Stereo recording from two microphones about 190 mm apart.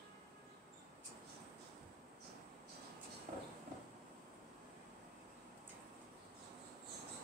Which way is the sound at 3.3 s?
35° right (ahead or behind).